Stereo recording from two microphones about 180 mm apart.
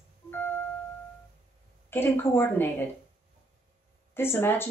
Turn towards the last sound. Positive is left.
turn(degrees=15)  # may be behind; listen again after turning